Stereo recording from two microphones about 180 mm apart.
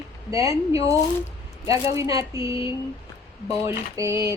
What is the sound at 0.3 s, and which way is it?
Speech, 15° right (ahead or behind).